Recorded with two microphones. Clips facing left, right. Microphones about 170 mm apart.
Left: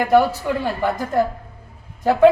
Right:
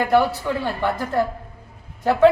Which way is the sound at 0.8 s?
15° left (ahead or behind).